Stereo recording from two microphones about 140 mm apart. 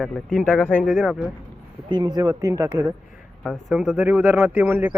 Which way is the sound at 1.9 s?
30° right (ahead or behind).